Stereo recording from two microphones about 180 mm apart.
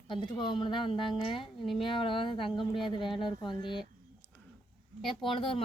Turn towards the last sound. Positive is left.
turn(degrees=30)  # may be behind; listen again after turning